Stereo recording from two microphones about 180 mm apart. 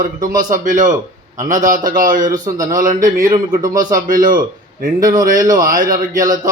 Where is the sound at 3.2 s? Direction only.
20° right (ahead or behind).